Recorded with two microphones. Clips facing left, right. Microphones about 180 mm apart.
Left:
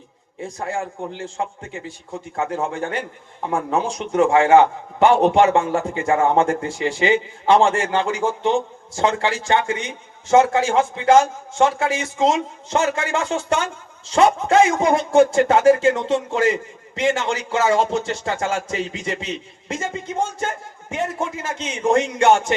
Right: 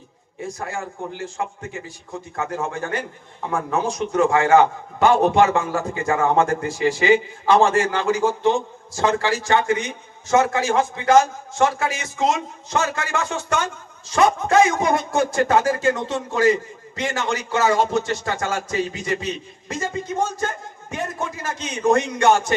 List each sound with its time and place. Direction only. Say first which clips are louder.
0.4 s a man's voice: left 3 dB; 30° left (ahead or behind)